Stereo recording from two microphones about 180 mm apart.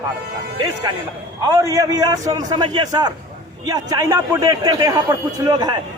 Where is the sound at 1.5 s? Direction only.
15° right (ahead or behind).